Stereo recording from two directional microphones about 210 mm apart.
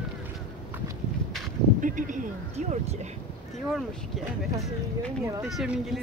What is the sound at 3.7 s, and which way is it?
Speech, centre (ahead or behind).